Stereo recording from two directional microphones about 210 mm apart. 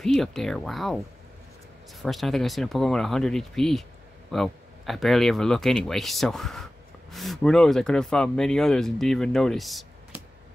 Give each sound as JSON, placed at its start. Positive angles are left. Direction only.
{"t": 0.0, "sound": "speech", "side_deg": 0}